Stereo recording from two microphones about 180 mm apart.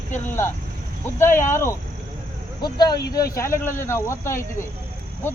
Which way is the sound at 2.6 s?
25° left (ahead or behind).